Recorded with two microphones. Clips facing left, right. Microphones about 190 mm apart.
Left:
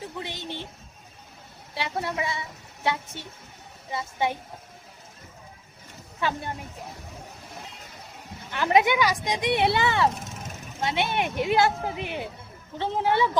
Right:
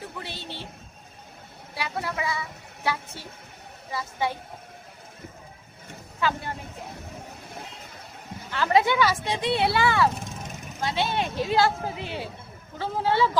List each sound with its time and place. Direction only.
0.2 s a sound: 15° left (ahead or behind)
1.7 s speech: 25° left (ahead or behind)
6.1 s speech: 25° left (ahead or behind)
8.4 s speech: 20° left (ahead or behind)